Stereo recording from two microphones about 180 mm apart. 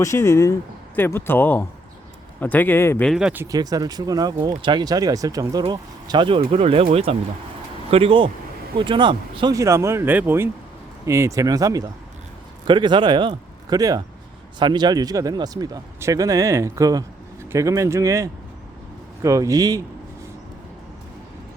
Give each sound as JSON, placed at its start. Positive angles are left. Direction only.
{"t": 0.0, "sound": "speech", "side_deg": 15}
{"t": 3.1, "sound": "speech", "side_deg": -5}
{"t": 3.4, "sound": "a man's voice", "side_deg": -20}